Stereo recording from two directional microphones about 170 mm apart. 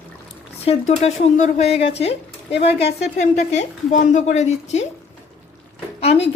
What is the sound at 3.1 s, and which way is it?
A woman's voice, 45° left (ahead or behind).